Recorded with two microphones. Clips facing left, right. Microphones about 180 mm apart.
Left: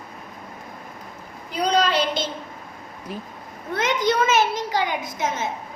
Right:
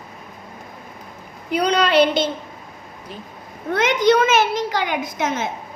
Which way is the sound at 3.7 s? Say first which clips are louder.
Right 5 dB; 75° right (ahead or behind).